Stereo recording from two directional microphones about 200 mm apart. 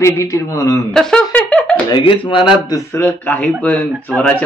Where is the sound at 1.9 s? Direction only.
25° left (ahead or behind).